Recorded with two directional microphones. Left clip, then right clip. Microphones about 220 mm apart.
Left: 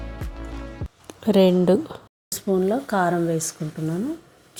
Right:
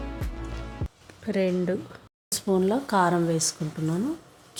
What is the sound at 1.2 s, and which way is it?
Speech, 20° left (ahead or behind).